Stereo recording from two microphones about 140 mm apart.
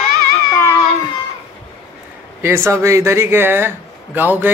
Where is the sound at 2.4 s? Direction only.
20° right (ahead or behind).